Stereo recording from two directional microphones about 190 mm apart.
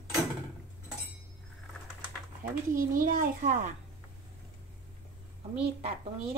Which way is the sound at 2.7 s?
45° right (ahead or behind).